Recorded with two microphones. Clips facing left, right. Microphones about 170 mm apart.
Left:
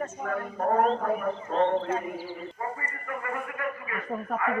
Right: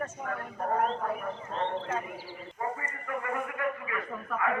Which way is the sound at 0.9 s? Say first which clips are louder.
Left 6 dB; 50° left (ahead or behind).